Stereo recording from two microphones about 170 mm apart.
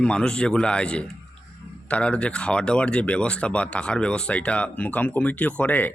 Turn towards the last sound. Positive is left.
turn(degrees=10)  # may be behind; listen again after turning